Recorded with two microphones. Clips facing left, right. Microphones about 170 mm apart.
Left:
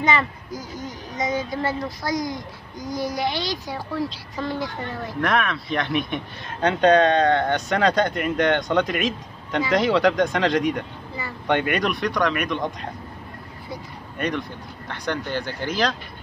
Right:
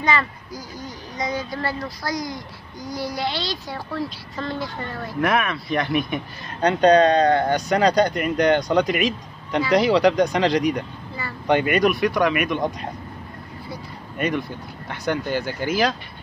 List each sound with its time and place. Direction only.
0.0 s a child's voice: 20° left (ahead or behind)
5.2 s speech: 5° right (ahead or behind)
14.1 s speech: 5° right (ahead or behind)